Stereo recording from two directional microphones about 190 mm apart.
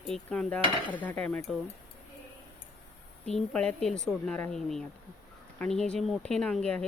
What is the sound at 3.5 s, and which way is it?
Speech, 5° left (ahead or behind).